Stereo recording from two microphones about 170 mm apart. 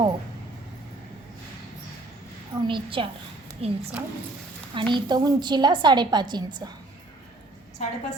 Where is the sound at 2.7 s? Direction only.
30° right (ahead or behind).